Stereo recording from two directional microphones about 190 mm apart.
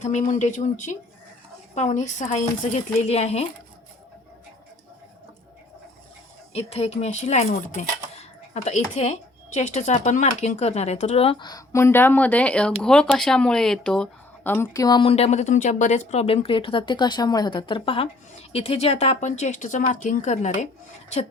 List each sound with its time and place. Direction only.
0.0 s speech: 40° left (ahead or behind)
6.5 s speech: 35° left (ahead or behind)